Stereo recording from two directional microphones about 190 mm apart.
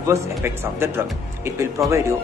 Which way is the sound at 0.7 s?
10° right (ahead or behind).